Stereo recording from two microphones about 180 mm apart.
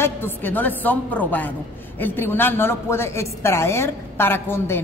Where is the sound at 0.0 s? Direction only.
10° left (ahead or behind).